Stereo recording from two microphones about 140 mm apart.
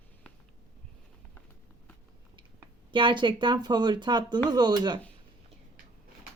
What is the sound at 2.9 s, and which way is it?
Speech, 35° right (ahead or behind).